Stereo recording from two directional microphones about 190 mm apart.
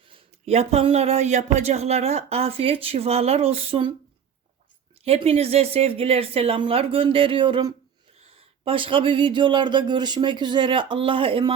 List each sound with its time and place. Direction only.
0.1 s speech: 30° right (ahead or behind)
5.0 s speech: 30° right (ahead or behind)